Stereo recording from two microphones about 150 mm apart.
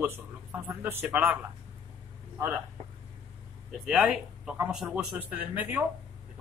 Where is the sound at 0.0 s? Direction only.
10° right (ahead or behind).